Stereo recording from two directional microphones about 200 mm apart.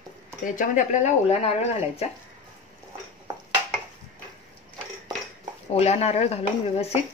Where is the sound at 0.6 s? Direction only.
40° left (ahead or behind).